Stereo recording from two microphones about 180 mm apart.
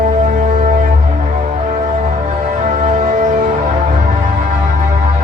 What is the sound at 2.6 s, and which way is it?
Music, 40° right (ahead or behind).